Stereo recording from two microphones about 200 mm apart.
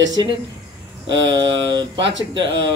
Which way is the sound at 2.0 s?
65° right (ahead or behind).